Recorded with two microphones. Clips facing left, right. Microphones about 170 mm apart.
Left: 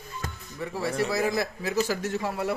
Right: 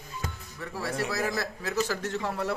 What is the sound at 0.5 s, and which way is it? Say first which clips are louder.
A man's voice: left 4 dB; 15° left (ahead or behind).